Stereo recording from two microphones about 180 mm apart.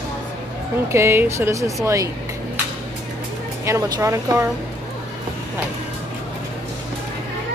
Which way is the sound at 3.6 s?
15° right (ahead or behind).